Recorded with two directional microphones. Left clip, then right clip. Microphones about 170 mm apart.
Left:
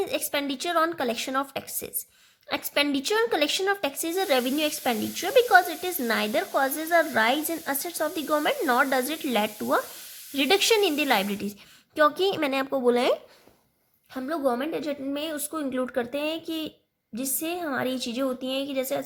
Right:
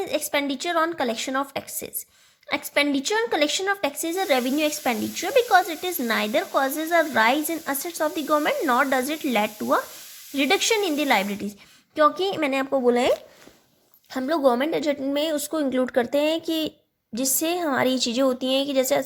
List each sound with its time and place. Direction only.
0.0 s speech: centre (ahead or behind)
14.1 s speech: 35° right (ahead or behind)